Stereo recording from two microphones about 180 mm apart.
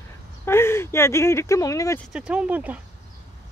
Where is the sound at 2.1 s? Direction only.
5° right (ahead or behind).